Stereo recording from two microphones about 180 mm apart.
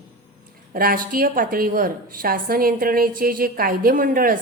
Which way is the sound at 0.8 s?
50° right (ahead or behind).